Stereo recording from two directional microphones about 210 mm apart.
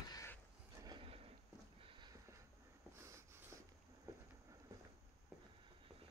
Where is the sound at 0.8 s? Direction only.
25° right (ahead or behind).